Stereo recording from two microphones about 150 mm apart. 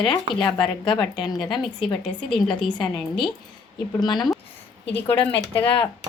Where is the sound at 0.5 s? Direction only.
30° left (ahead or behind).